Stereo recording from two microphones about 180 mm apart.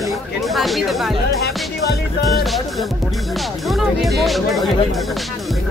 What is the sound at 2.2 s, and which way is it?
Speech, centre (ahead or behind).